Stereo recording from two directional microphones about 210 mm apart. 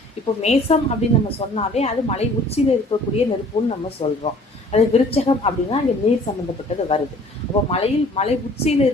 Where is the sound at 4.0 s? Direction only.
25° left (ahead or behind).